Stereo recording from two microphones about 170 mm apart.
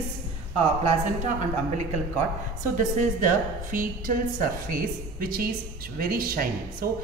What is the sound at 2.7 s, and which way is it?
A woman's voice, 50° right (ahead or behind).